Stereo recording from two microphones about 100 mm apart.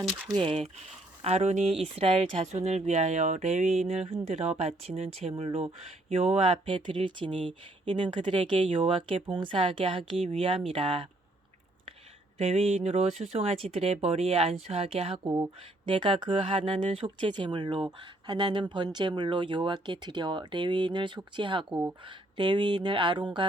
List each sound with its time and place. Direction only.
0.3 s speech: 70° right (ahead or behind)
1.2 s speech: 90° right
1.8 s speech: 80° right
5.4 s speech: 75° right (ahead or behind)
12.4 s speech: 90° right
15.2 s speech: 40° right (ahead or behind)
15.9 s speech: 60° right (ahead or behind)